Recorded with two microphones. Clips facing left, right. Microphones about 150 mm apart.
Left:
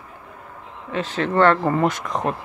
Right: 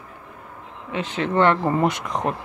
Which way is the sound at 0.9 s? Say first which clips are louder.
Left 1 dB; 20° right (ahead or behind).